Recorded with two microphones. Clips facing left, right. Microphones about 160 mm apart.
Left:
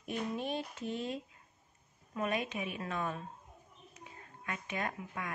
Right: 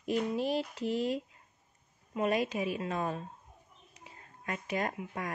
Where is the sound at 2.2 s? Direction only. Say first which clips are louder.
Right 5 dB; 35° right (ahead or behind).